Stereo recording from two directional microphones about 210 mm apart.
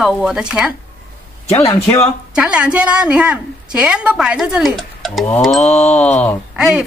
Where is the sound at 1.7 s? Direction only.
15° left (ahead or behind).